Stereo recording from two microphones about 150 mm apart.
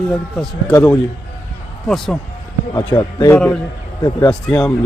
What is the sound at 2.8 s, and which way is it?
Speech, 25° left (ahead or behind).